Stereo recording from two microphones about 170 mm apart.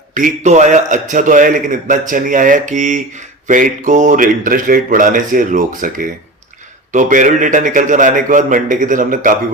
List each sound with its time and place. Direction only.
0.1 s a man's voice: 45° right (ahead or behind)